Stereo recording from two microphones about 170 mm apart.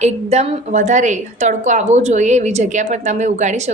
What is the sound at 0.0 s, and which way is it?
A woman's voice, 40° right (ahead or behind).